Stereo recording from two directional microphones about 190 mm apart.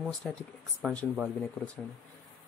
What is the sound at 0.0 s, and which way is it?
Speech, centre (ahead or behind).